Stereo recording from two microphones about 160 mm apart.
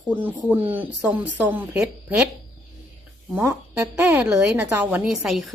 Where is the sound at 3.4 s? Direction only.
15° right (ahead or behind).